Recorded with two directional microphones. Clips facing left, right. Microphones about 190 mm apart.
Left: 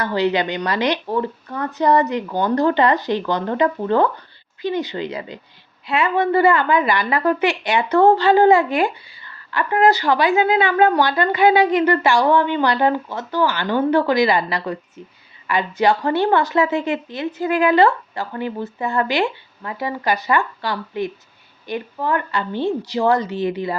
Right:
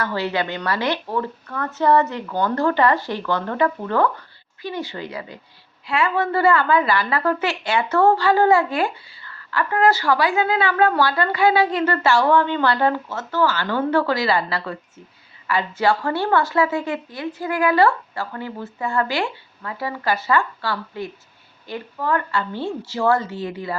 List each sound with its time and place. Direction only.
0.0 s a woman's voice: 20° left (ahead or behind)